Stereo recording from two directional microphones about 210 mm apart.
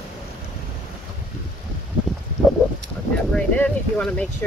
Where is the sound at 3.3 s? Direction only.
5° left (ahead or behind).